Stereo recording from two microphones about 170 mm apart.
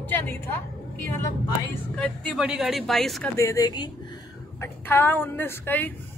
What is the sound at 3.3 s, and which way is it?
Speech, 20° left (ahead or behind).